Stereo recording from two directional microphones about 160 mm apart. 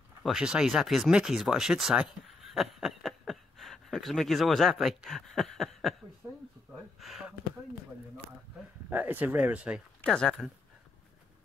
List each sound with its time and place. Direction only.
0.2 s speech: 5° right (ahead or behind)
6.2 s a sound: 15° right (ahead or behind)
6.7 s gasp: centre (ahead or behind)
8.9 s speech: 10° right (ahead or behind)
10.0 s speech: 5° left (ahead or behind)